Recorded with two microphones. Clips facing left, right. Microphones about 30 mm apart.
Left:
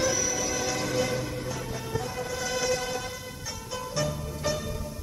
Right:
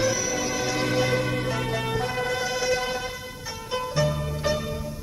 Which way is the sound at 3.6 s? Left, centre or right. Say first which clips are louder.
Right 8 dB; right.